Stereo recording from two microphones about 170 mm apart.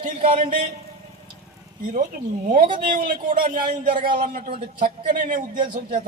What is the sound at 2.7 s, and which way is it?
A man's voice, 50° right (ahead or behind).